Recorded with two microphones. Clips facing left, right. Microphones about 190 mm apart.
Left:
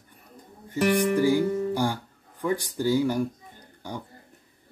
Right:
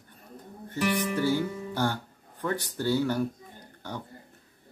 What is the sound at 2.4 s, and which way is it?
Speech, 10° left (ahead or behind).